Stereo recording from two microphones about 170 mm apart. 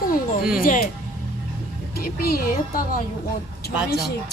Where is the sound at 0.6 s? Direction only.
55° left (ahead or behind).